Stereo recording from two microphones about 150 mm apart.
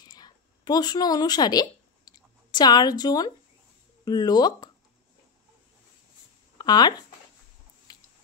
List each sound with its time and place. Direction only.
0.0 s a sound: 25° left (ahead or behind)
4.0 s speech: 25° left (ahead or behind)
6.6 s speech: 30° left (ahead or behind)